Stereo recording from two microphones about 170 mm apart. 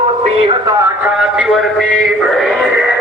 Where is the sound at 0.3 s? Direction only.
30° right (ahead or behind).